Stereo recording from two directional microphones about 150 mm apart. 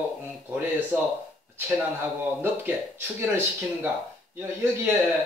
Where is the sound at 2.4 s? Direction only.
15° right (ahead or behind).